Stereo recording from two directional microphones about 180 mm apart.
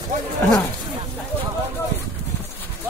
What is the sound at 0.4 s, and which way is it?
Speech, 15° left (ahead or behind).